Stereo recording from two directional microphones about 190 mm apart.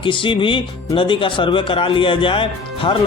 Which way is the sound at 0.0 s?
25° left (ahead or behind).